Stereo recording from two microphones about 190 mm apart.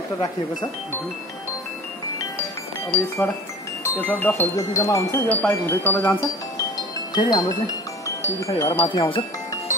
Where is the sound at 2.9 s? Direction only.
10° left (ahead or behind).